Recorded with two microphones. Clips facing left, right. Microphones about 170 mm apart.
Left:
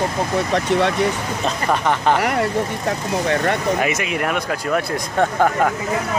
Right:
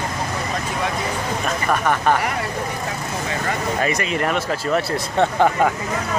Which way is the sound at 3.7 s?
10° left (ahead or behind).